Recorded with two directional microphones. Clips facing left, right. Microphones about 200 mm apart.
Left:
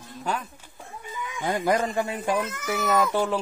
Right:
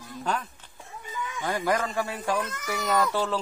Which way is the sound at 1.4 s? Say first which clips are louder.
Left 3 dB; 20° left (ahead or behind).